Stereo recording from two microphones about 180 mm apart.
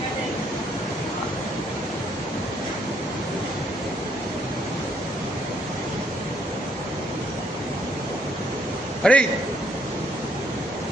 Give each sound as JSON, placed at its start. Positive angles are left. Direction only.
{"t": 9.0, "sound": "a man's voice", "side_deg": 5}